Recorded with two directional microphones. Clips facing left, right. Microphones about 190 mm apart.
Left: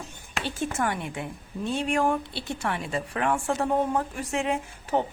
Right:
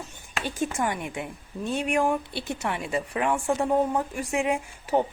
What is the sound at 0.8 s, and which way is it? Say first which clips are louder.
A woman's voice: even; 15° right (ahead or behind).